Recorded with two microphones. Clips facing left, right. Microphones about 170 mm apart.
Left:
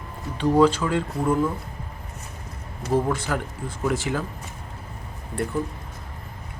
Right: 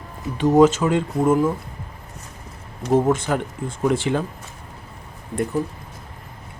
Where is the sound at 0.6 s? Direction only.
20° right (ahead or behind).